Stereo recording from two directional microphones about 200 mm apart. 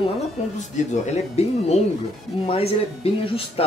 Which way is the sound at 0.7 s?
35° left (ahead or behind).